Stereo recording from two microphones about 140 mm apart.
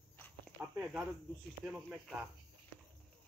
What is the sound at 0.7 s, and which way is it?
Speech, 10° right (ahead or behind).